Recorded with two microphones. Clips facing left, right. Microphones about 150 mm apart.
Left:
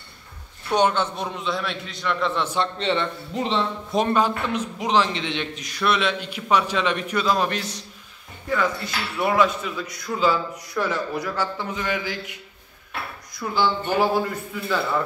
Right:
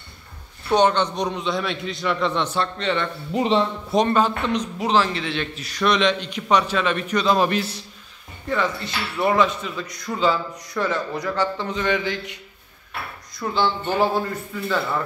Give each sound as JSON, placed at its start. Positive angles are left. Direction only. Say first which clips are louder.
{"t": 0.7, "sound": "a man's voice", "louder": "right 2 dB", "side_deg": 5}
{"t": 2.8, "sound": "speech", "louder": "even", "side_deg": 30}
{"t": 3.3, "sound": "a man's voice", "louder": "right 5 dB", "side_deg": -10}
{"t": 3.9, "sound": "speech", "louder": "right 2 dB", "side_deg": 10}
{"t": 7.3, "sound": "a man's voice", "louder": "right 4 dB", "side_deg": -5}
{"t": 8.5, "sound": "speech", "louder": "even", "side_deg": 5}